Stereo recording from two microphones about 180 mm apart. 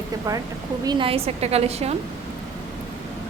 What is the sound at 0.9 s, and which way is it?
A woman's voice, 30° right (ahead or behind).